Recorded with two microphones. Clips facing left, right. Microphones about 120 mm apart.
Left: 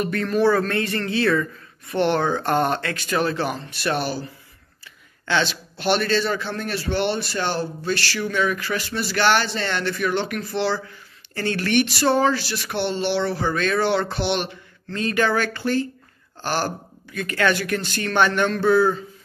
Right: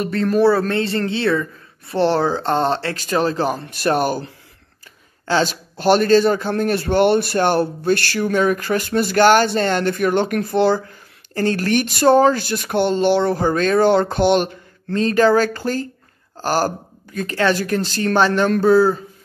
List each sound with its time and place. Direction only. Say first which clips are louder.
0.0 s a man's voice: right 4 dB; 35° right (ahead or behind)
15.0 s speech: right 7 dB; 35° right (ahead or behind)